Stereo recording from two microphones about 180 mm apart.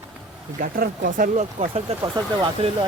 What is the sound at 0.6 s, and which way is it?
Speech, 50° right (ahead or behind).